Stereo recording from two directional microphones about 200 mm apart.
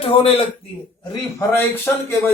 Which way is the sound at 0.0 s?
30° left (ahead or behind).